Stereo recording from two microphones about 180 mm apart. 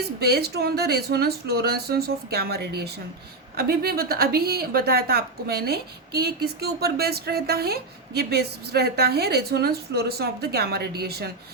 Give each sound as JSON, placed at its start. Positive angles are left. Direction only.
{"t": 0.2, "sound": "a woman's voice", "side_deg": -60}